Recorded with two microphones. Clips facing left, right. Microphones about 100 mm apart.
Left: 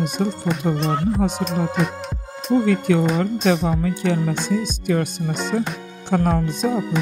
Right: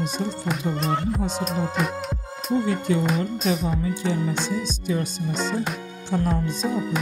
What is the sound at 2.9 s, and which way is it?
Speech, 75° left (ahead or behind).